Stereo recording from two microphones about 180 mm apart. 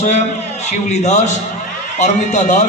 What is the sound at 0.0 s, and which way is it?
A man's voice, 40° left (ahead or behind).